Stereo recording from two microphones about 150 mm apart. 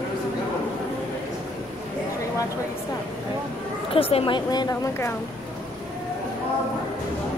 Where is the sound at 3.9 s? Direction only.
40° left (ahead or behind); by 5.1 s 20° left (ahead or behind).